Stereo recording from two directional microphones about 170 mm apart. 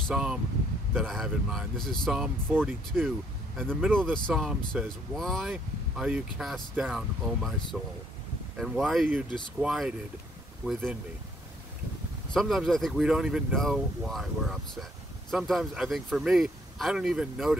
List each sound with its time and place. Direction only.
0.1 s speech: 5° right (ahead or behind)
2.4 s speech: 15° right (ahead or behind)
12.4 s speech: centre (ahead or behind)